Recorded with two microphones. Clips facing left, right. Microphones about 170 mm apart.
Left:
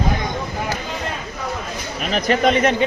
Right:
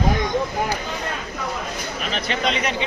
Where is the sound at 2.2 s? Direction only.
50° left (ahead or behind).